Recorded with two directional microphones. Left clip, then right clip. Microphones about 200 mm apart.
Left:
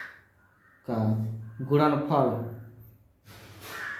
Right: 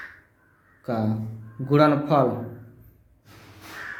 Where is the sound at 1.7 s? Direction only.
35° right (ahead or behind).